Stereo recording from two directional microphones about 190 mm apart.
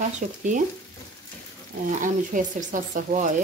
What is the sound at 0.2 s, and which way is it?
Speech, 45° right (ahead or behind).